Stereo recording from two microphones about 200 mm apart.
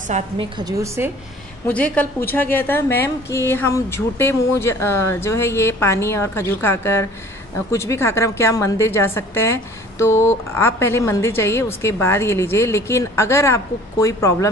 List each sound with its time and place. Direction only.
0.1 s a woman's voice: 25° right (ahead or behind)
1.7 s a woman's voice: 5° left (ahead or behind)